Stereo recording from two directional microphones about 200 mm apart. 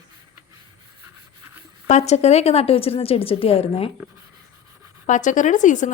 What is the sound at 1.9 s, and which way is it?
A woman's voice, 35° left (ahead or behind).